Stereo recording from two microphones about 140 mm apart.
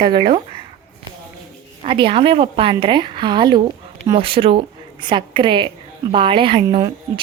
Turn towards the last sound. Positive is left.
turn(degrees=-35)  # may be behind; listen again after turning